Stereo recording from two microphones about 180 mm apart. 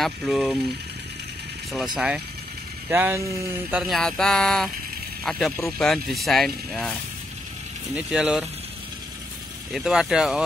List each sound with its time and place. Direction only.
0.0 s speech: centre (ahead or behind)
2.0 s speech: 5° right (ahead or behind)
3.7 s speech: centre (ahead or behind)
9.7 s speech: 5° right (ahead or behind)